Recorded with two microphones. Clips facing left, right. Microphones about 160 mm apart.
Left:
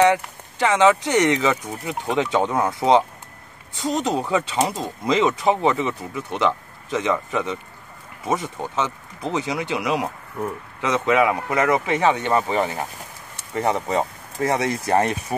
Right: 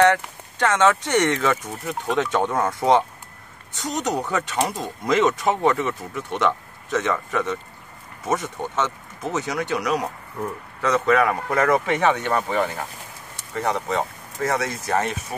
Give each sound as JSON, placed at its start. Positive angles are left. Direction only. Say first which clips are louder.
{"t": 0.0, "sound": "speech", "louder": "even", "side_deg": 15}
{"t": 13.6, "sound": "speech", "louder": "left 2 dB", "side_deg": 30}